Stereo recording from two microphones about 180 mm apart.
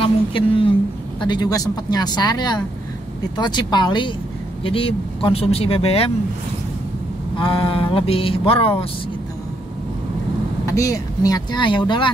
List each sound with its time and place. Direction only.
0.0 s speech: 30° left (ahead or behind)
7.3 s speech: 30° left (ahead or behind)
10.6 s speech: 15° left (ahead or behind)